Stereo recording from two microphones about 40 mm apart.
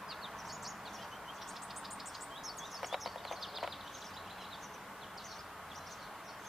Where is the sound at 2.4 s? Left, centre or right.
Centre.